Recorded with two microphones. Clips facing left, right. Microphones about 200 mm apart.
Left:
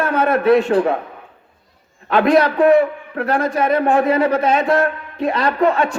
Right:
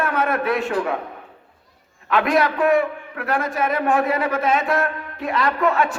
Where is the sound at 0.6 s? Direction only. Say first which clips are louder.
Left 7 dB; 30° left (ahead or behind).